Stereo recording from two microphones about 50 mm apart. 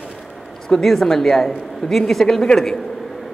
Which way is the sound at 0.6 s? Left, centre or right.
Centre.